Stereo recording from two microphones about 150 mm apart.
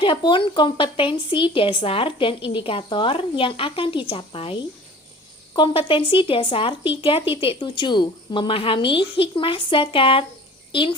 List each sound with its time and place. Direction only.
0.0 s a child's voice: 35° left (ahead or behind)